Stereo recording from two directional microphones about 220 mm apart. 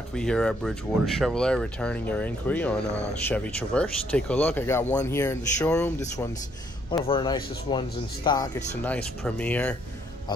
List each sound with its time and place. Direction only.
0.1 s speech: 5° left (ahead or behind); by 8.5 s 20° left (ahead or behind)
8.8 s speech: 5° left (ahead or behind)